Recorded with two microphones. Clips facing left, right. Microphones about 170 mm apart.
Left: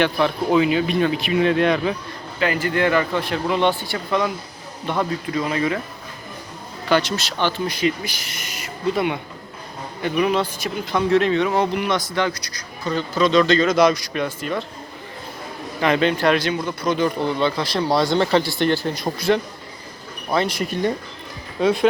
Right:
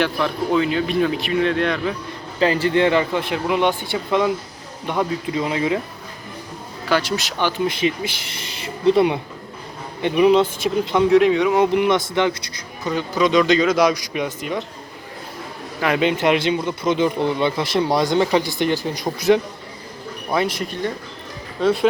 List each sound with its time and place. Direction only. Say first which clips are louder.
0.0 s speech: left 1 dB; 5° left (ahead or behind)
2.4 s speech: right 3 dB; 30° right (ahead or behind)
7.2 s speech: right 1 dB; 15° right (ahead or behind)
15.8 s speech: even; 10° right (ahead or behind)
20.6 s speech: left 3 dB; 10° left (ahead or behind)
21.6 s speech: even; 5° right (ahead or behind)